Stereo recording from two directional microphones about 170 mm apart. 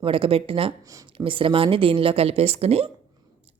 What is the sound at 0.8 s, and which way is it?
Speech, 20° right (ahead or behind).